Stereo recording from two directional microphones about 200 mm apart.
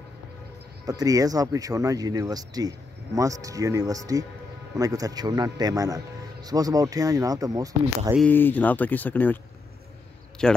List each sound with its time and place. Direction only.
0.8 s speech: 20° right (ahead or behind)
8.2 s speech: 10° left (ahead or behind)
10.4 s speech: 5° left (ahead or behind)